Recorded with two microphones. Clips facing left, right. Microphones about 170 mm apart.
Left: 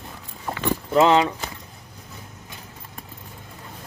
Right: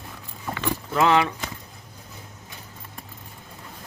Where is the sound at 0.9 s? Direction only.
20° left (ahead or behind).